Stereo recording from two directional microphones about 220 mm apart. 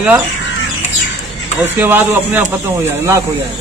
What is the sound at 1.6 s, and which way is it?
Speech, 10° right (ahead or behind).